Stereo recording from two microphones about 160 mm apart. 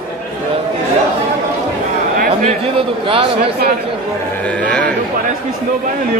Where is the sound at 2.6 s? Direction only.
35° right (ahead or behind).